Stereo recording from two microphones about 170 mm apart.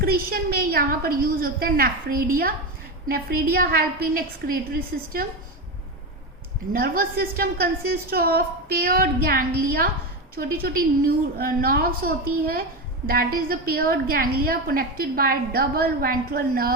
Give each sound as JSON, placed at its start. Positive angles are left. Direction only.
{"t": 0.0, "sound": "a woman's voice", "side_deg": -60}
{"t": 6.7, "sound": "a woman's voice", "side_deg": -60}